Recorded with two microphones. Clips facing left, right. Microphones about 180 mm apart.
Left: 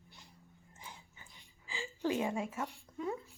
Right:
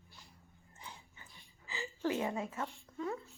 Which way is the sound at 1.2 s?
10° left (ahead or behind).